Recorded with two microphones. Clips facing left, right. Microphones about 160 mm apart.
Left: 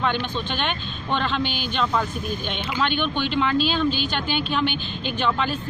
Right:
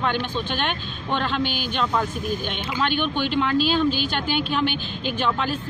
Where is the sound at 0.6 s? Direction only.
45° right (ahead or behind).